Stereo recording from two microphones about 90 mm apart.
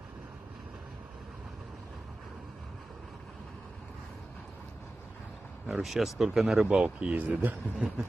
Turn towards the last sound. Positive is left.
turn(degrees=-15)  # may be behind; listen again after turning